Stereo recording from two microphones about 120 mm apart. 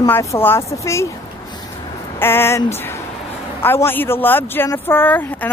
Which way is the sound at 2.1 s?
20° left (ahead or behind).